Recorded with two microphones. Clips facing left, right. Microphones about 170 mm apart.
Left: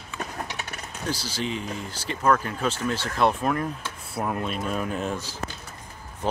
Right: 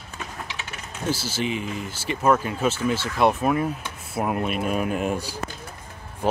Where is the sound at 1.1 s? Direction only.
25° right (ahead or behind).